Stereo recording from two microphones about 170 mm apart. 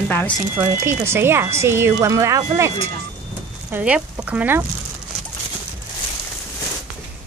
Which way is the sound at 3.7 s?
5° right (ahead or behind).